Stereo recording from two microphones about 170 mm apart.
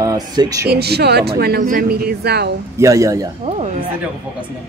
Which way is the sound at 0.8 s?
75° right (ahead or behind).